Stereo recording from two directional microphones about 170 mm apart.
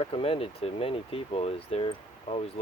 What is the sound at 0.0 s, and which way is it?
Speech, 35° left (ahead or behind).